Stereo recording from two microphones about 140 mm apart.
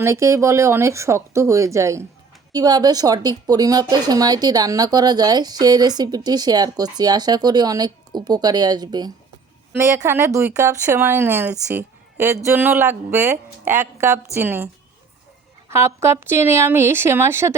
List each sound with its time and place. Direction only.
0.0 s speech: 20° right (ahead or behind)
9.7 s speech: 20° right (ahead or behind)
11.7 s a sound: 15° right (ahead or behind)
12.5 s speech: 15° right (ahead or behind)
15.7 s speech: 20° right (ahead or behind)